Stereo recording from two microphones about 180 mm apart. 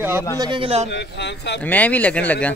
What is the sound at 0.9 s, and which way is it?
Speech, 70° left (ahead or behind).